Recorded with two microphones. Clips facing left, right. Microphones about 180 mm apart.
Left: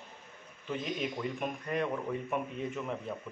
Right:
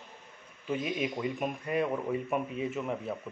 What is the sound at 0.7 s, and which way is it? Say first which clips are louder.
Speech: right 3 dB; 10° right (ahead or behind).